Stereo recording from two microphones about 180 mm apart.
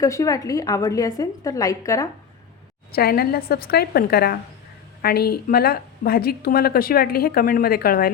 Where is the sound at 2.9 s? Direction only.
55° left (ahead or behind).